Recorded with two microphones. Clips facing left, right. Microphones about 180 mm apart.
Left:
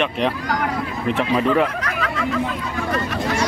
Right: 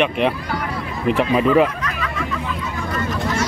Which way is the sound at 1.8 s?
75° left (ahead or behind).